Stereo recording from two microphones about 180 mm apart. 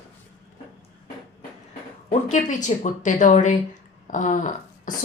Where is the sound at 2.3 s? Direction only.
45° left (ahead or behind).